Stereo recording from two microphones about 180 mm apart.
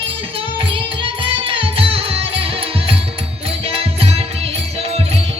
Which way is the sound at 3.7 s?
35° right (ahead or behind).